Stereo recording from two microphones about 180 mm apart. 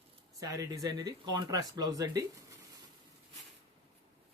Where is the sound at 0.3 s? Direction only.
20° right (ahead or behind).